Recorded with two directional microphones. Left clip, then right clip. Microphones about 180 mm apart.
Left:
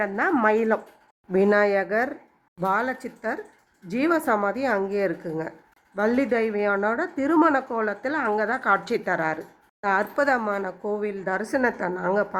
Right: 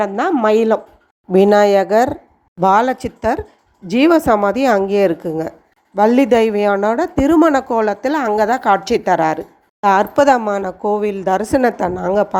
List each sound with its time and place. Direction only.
0.0 s a woman's voice: 25° right (ahead or behind)